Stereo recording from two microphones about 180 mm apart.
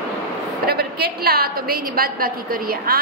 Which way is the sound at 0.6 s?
60° right (ahead or behind).